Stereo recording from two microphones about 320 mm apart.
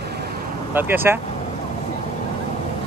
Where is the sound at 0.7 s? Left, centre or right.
Centre.